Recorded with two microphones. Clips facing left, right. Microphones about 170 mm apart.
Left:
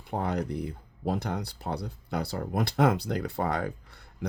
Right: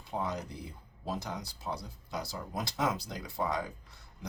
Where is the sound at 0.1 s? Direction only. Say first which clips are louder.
Left 6 dB; 60° left (ahead or behind).